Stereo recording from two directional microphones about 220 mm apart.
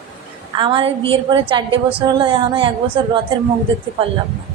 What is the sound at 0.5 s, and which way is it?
A woman's voice, 20° right (ahead or behind).